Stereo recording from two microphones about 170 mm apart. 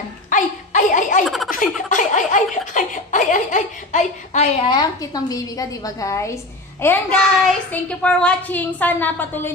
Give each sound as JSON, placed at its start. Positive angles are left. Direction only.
{"t": 0.3, "sound": "laughter", "side_deg": 50}
{"t": 1.2, "sound": "speech", "side_deg": 0}
{"t": 1.5, "sound": "a sound", "side_deg": 50}
{"t": 4.6, "sound": "a woman's voice", "side_deg": 25}